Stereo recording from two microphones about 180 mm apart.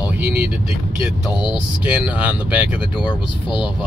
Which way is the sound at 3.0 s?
25° left (ahead or behind).